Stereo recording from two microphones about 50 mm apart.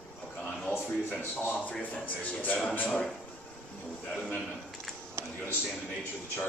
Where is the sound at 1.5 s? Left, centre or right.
Left.